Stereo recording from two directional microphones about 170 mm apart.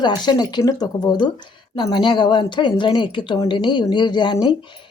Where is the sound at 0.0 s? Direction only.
25° left (ahead or behind).